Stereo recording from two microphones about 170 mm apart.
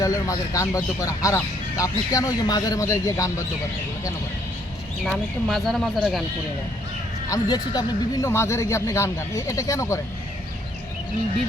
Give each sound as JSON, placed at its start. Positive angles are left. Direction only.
{"t": 0.0, "sound": "speech", "side_deg": 20}
{"t": 5.0, "sound": "speech", "side_deg": 0}
{"t": 7.3, "sound": "speech", "side_deg": 25}